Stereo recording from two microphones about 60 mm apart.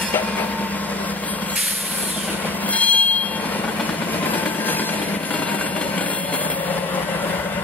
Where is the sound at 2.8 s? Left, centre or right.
Left.